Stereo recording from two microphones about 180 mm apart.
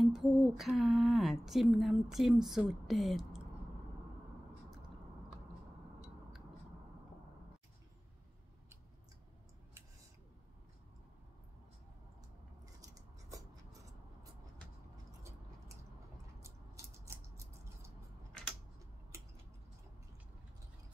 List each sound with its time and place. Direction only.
0.0 s speech: centre (ahead or behind)
16.3 s a sound: 15° right (ahead or behind)
19.1 s scissors: 15° right (ahead or behind)